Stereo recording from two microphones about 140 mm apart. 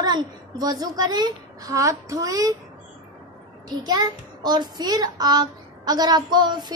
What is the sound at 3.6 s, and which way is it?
Child singing, 30° right (ahead or behind).